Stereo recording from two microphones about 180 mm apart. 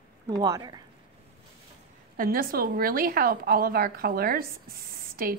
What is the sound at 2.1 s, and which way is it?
A woman's voice, 55° right (ahead or behind).